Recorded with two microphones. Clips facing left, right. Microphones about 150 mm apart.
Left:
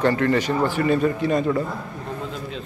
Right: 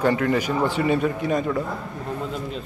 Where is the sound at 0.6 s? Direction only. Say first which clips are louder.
Left 1 dB; 20° right (ahead or behind).